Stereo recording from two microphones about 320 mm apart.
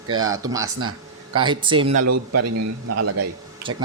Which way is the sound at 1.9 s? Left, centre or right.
Right.